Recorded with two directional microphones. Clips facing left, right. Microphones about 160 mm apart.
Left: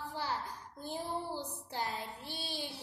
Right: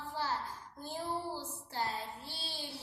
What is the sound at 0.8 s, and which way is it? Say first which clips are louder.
Child singing: even; 15° left (ahead or behind).